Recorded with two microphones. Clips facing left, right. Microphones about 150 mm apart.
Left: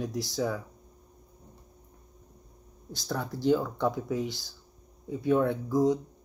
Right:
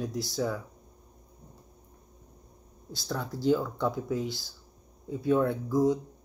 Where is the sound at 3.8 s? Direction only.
5° right (ahead or behind).